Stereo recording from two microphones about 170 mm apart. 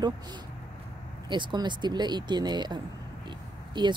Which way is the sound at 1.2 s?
25° right (ahead or behind).